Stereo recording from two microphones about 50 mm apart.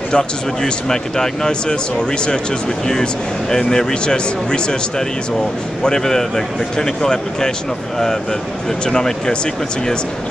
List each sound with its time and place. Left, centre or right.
0.1 s a man's voice: centre
8.8 s a man's voice: centre